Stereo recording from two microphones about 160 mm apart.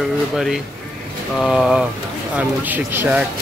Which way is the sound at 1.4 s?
5° right (ahead or behind).